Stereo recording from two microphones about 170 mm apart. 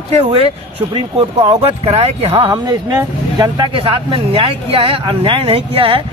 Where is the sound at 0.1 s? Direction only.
30° right (ahead or behind).